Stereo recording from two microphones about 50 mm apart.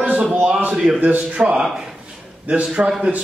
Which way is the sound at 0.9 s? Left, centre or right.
Right.